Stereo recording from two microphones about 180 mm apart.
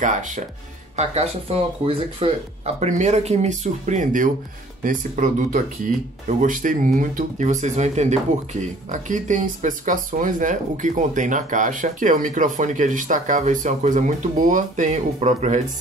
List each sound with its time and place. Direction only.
0.0 s speech: 45° right (ahead or behind)